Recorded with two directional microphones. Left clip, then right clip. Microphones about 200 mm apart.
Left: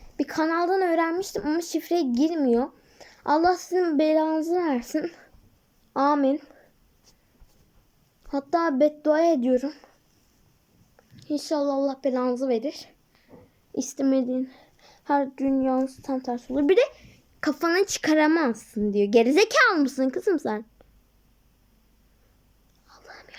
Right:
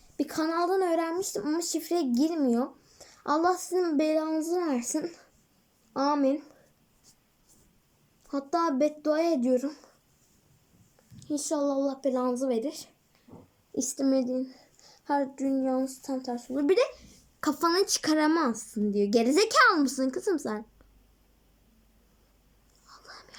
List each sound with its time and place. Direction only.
0.2 s speech: 10° right (ahead or behind)
8.3 s speech: 10° right (ahead or behind)
11.2 s speech: 10° right (ahead or behind)
13.3 s a sound: 15° right (ahead or behind)
14.0 s speech: 5° right (ahead or behind)
22.9 s whispering: 10° right (ahead or behind)